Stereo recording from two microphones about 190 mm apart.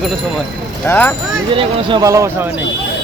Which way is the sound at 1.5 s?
20° right (ahead or behind).